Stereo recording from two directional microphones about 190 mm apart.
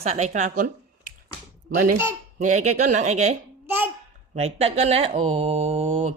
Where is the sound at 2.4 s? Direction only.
40° right (ahead or behind).